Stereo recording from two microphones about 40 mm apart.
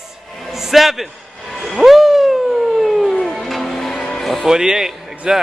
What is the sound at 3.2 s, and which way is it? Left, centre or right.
Music, centre.